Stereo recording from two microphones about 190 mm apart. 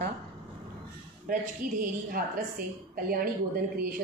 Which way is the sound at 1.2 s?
45° right (ahead or behind).